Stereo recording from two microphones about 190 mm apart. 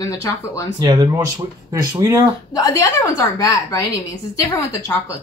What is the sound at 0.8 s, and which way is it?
Speech, 20° right (ahead or behind).